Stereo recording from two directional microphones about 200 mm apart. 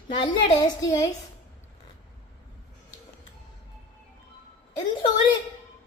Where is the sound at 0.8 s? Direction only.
15° left (ahead or behind).